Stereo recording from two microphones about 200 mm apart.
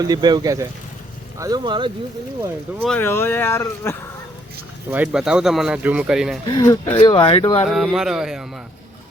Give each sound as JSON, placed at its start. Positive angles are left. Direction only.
{"t": 0.0, "sound": "speech", "side_deg": -20}
{"t": 2.8, "sound": "speech", "side_deg": 10}
{"t": 4.9, "sound": "speech", "side_deg": -5}
{"t": 6.5, "sound": "speech", "side_deg": 20}
{"t": 7.7, "sound": "speech", "side_deg": 0}